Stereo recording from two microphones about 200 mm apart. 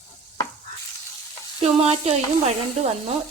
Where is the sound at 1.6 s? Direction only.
30° right (ahead or behind).